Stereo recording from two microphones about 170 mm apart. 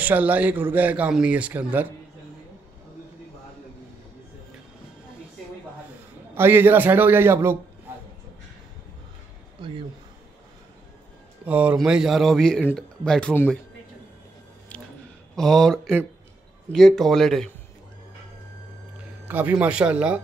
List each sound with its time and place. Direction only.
0.0 s speech: 10° right (ahead or behind)
6.3 s speech: 15° right (ahead or behind)
9.6 s speech: 30° right (ahead or behind)
11.4 s speech: 10° right (ahead or behind); by 13.6 s 10° left (ahead or behind)
15.3 s speech: centre (ahead or behind)
19.2 s speech: 10° right (ahead or behind)